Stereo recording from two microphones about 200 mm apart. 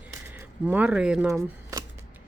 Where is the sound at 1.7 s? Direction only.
15° right (ahead or behind).